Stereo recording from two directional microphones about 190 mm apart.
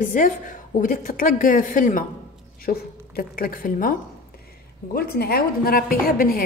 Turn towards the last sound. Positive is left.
turn(degrees=50)  # may be behind; listen again after turning